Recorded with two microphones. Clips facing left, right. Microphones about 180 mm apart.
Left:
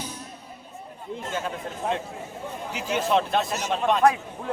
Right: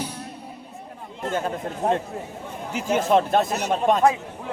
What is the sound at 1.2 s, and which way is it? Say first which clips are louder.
Speech: right 6 dB; 50° right (ahead or behind).